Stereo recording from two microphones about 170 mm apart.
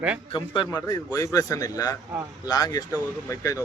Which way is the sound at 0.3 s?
25° left (ahead or behind).